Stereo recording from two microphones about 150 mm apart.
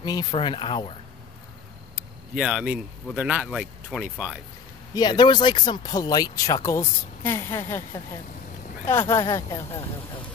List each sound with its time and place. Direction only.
0.0 s speech: 25° left (ahead or behind)
2.0 s speech: 5° right (ahead or behind)
4.9 s speech: 30° left (ahead or behind)
9.7 s speech: 40° left (ahead or behind)